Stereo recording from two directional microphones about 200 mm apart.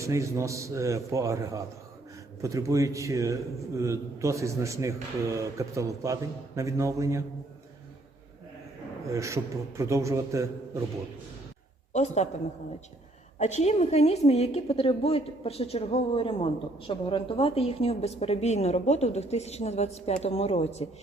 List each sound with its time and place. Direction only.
0.0 s a man's voice: 15° right (ahead or behind)
9.1 s a man's voice: 15° right (ahead or behind)
11.9 s a woman's voice: 35° left (ahead or behind)
13.4 s a woman's voice: 35° left (ahead or behind)